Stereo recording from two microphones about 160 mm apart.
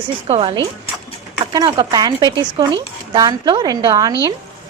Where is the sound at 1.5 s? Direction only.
25° right (ahead or behind).